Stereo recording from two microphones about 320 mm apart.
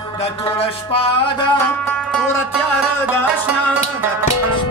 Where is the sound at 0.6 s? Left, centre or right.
Centre.